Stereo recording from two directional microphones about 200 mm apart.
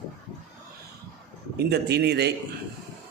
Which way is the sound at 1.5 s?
55° right (ahead or behind).